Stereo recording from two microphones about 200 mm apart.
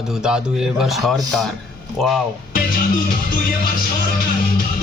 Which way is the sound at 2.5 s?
45° left (ahead or behind).